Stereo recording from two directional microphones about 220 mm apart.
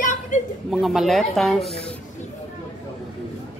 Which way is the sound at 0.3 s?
30° left (ahead or behind).